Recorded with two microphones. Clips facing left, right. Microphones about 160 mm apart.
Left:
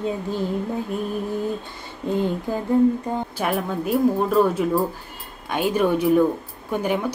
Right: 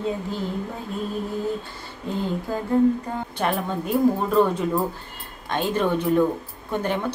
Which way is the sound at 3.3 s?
5° left (ahead or behind).